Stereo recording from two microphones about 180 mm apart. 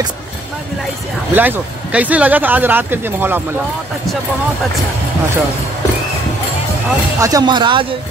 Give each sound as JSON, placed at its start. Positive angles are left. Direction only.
{"t": 1.3, "sound": "speech", "side_deg": -10}
{"t": 7.2, "sound": "speech", "side_deg": -20}